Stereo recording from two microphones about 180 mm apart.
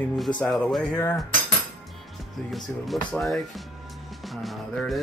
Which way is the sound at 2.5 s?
Centre (ahead or behind).